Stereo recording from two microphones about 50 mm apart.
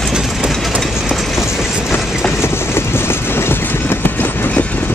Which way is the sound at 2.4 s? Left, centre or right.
Left.